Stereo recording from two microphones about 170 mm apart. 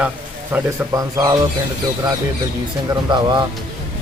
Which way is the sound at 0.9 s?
20° right (ahead or behind).